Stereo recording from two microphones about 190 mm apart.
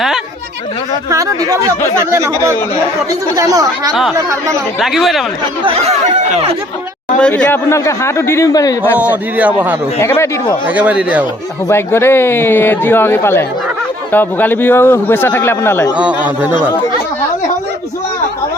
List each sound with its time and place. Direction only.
1.1 s a man's voice: 15° right (ahead or behind)
4.8 s speech: centre (ahead or behind)
5.6 s speech: 30° right (ahead or behind)
7.2 s a man's voice: 5° left (ahead or behind)
9.0 s a man's voice: 10° right (ahead or behind)
10.0 s a man's voice: 15° left (ahead or behind)
10.8 s a man's voice: 5° right (ahead or behind)
11.7 s a man's voice: 15° left (ahead or behind)
16.0 s a man's voice: 5° right (ahead or behind)